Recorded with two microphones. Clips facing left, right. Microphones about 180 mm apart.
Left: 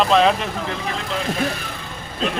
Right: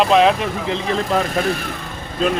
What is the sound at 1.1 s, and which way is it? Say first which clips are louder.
Speech: right 8 dB; 45° right (ahead or behind).